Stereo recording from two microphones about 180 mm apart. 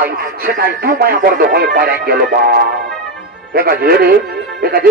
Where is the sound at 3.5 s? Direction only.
55° right (ahead or behind).